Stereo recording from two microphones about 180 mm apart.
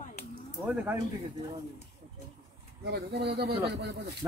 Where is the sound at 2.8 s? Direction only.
65° right (ahead or behind).